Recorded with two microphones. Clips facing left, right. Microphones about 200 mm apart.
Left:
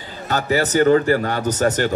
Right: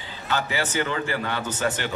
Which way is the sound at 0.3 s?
40° left (ahead or behind).